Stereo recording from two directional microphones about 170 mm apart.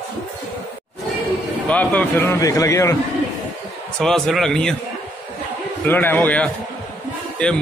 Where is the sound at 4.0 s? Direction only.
5° left (ahead or behind).